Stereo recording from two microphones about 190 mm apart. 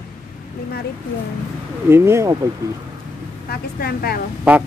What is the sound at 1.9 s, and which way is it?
Speech, 15° right (ahead or behind).